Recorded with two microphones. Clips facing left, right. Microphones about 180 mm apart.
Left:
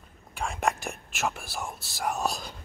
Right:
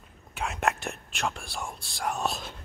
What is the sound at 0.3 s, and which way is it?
Speech, centre (ahead or behind).